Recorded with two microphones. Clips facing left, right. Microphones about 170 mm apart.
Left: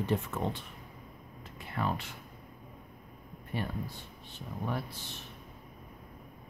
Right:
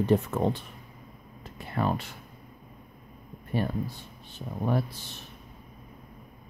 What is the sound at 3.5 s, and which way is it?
Speech, 40° right (ahead or behind).